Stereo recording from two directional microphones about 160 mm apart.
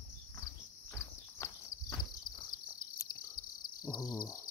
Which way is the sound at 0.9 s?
15° left (ahead or behind).